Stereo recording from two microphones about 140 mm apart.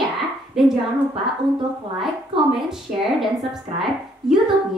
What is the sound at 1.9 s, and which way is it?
A child's voice, centre (ahead or behind).